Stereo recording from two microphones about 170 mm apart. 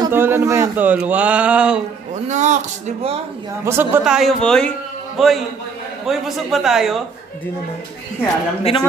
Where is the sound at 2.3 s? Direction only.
45° right (ahead or behind).